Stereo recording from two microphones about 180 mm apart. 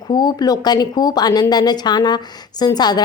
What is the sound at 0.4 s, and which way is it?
A woman's voice, 20° left (ahead or behind).